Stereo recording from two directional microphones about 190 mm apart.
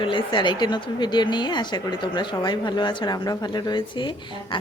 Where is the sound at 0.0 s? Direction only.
25° left (ahead or behind).